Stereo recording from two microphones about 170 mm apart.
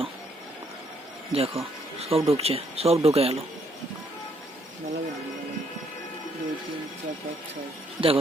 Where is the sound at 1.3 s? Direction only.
35° right (ahead or behind).